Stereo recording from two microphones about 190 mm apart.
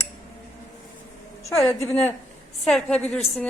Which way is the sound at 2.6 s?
Centre (ahead or behind).